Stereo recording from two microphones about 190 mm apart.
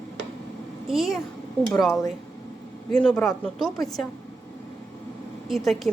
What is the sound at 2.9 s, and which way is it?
Speech, 5° left (ahead or behind).